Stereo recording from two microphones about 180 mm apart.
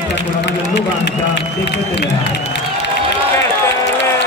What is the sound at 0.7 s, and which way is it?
Speech, 75° left (ahead or behind).